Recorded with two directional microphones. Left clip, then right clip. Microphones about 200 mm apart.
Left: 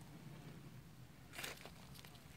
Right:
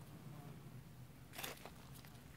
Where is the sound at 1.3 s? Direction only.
35° left (ahead or behind).